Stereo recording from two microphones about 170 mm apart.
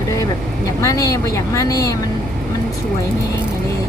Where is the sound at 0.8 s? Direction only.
20° left (ahead or behind).